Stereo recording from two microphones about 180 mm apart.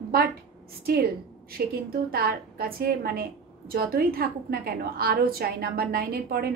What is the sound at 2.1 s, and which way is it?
A woman's voice, 60° right (ahead or behind).